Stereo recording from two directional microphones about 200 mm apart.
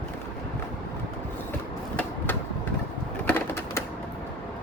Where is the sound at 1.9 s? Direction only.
10° left (ahead or behind).